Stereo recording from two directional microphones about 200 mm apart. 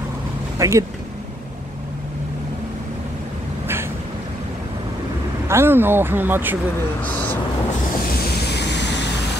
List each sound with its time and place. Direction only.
0.6 s speech: 15° right (ahead or behind)
5.5 s speech: 10° right (ahead or behind)
8.5 s vehicle: 60° left (ahead or behind)